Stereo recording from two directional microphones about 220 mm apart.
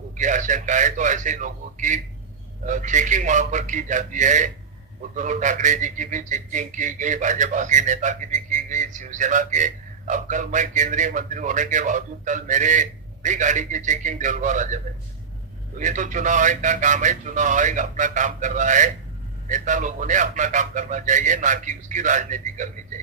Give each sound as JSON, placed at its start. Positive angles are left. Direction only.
{"t": 0.2, "sound": "a man's voice", "side_deg": -35}
{"t": 15.8, "sound": "a man's voice", "side_deg": -35}